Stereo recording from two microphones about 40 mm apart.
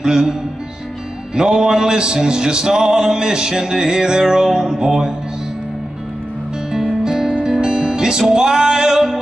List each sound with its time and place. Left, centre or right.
0.0 s music: centre
6.7 s music: centre